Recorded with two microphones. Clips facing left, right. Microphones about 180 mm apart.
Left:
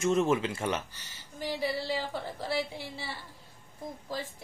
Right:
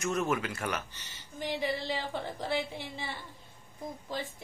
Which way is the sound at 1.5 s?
10° left (ahead or behind).